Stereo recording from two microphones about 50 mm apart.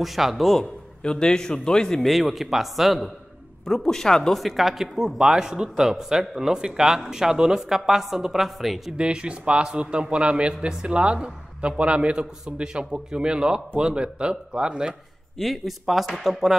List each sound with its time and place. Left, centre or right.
0.0 s a man's voice: centre
0.6 s a man's voice: centre
2.0 s a man's voice: centre
3.6 s speech: centre
4.4 s a man's voice: centre
8.9 s a man's voice: centre
15.3 s a man's voice: centre